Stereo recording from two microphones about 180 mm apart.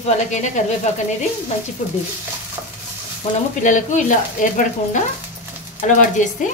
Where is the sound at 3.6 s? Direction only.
45° left (ahead or behind).